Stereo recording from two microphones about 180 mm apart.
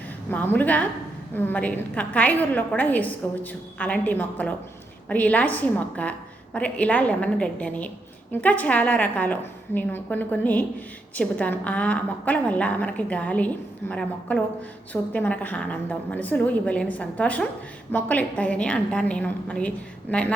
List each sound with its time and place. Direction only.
0.3 s a woman's voice: 10° left (ahead or behind)